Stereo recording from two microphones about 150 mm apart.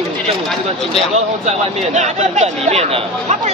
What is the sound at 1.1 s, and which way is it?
Speech, 50° right (ahead or behind).